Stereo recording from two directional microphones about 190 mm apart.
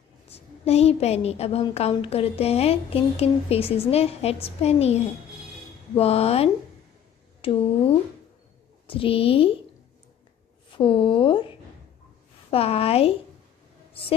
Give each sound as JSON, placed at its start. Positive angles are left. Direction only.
{"t": 0.3, "sound": "a woman's voice", "side_deg": 35}
{"t": 8.8, "sound": "speech", "side_deg": 30}
{"t": 10.7, "sound": "a woman's voice", "side_deg": 30}